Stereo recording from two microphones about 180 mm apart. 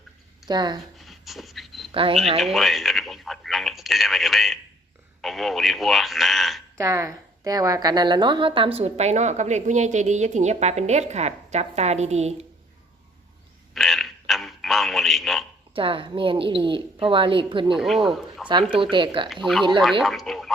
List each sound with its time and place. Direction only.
0.4 s a woman's voice: 25° right (ahead or behind)
0.9 s a sound: centre (ahead or behind)
1.9 s speech: 30° right (ahead or behind)
2.4 s speech: centre (ahead or behind)
6.7 s a woman's voice: 15° right (ahead or behind); by 12.3 s 35° right (ahead or behind)
13.7 s a sound: centre (ahead or behind)
15.7 s a woman's voice: 30° right (ahead or behind)
17.7 s speech: centre (ahead or behind)
18.7 s a woman's voice: 25° right (ahead or behind)
19.3 s speech: centre (ahead or behind)